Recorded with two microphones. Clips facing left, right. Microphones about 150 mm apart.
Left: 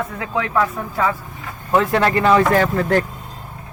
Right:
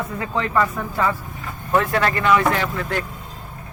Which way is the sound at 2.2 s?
35° left (ahead or behind).